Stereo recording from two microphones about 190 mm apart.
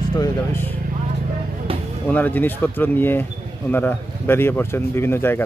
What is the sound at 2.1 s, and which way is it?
Speech, 10° left (ahead or behind).